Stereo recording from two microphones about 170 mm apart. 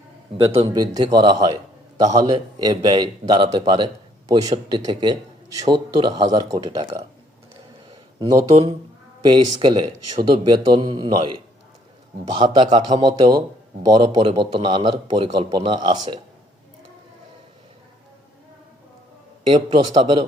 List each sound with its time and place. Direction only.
0.3 s a man's voice: 35° right (ahead or behind)
7.9 s a sound: 25° right (ahead or behind)
9.2 s a man's voice: 30° right (ahead or behind)
19.5 s a man's voice: 25° right (ahead or behind)